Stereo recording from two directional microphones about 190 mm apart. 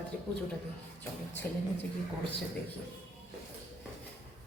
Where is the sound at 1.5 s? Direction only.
10° left (ahead or behind).